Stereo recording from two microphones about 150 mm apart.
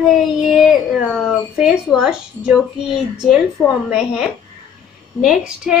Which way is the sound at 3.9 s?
5° right (ahead or behind).